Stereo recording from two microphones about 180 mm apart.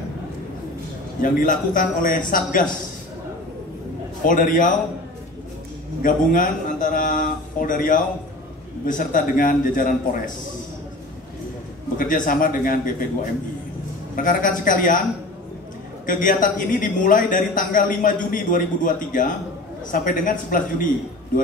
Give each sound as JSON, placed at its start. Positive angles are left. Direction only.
{"t": 1.2, "sound": "a man's voice", "side_deg": 50}
{"t": 4.3, "sound": "a man's voice", "side_deg": 50}
{"t": 6.0, "sound": "a man's voice", "side_deg": 50}
{"t": 12.0, "sound": "a man's voice", "side_deg": 50}
{"t": 16.1, "sound": "a man's voice", "side_deg": 50}